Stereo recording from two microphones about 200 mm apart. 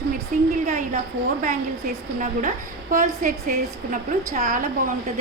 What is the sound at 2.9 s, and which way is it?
A woman's voice, 40° right (ahead or behind).